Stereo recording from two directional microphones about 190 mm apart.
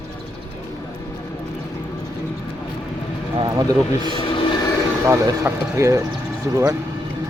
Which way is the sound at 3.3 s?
20° right (ahead or behind).